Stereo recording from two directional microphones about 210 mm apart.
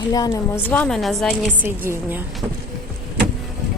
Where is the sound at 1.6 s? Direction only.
10° right (ahead or behind).